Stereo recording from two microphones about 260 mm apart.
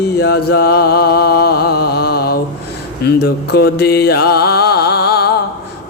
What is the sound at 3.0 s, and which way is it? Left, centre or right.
Mantra, left.